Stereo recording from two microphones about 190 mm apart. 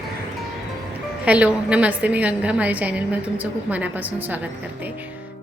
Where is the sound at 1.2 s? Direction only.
5° right (ahead or behind).